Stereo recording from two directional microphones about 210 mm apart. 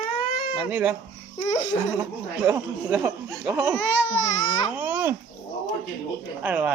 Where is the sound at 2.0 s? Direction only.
10° right (ahead or behind).